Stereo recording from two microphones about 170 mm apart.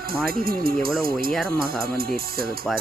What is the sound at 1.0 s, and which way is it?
Speech, 60° right (ahead or behind).